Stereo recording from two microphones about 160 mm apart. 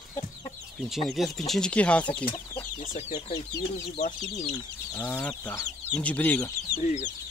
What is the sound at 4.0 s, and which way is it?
Speech, 65° left (ahead or behind).